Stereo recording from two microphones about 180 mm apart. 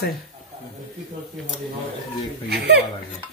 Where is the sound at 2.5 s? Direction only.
65° right (ahead or behind).